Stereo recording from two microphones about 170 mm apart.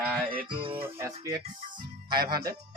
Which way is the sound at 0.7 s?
15° right (ahead or behind).